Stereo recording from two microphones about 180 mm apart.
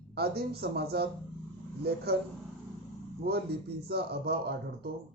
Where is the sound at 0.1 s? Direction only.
60° right (ahead or behind).